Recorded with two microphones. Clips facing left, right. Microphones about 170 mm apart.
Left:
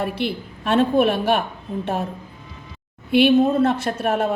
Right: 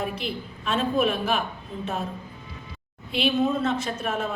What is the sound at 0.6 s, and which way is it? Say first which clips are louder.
Speech: left 7 dB; 60° left (ahead or behind).